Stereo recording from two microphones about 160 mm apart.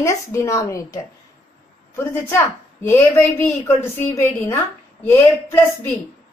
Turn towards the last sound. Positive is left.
turn(degrees=15)  # may be behind; listen again after turning